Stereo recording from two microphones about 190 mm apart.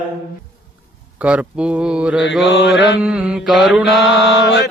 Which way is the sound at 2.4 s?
70° left (ahead or behind).